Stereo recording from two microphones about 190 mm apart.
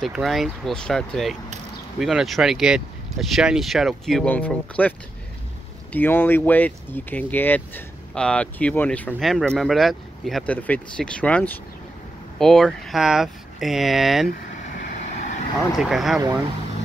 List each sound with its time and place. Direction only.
0.0 s speech: centre (ahead or behind)
14.6 s vehicle: 40° left (ahead or behind)
15.8 s speech: centre (ahead or behind)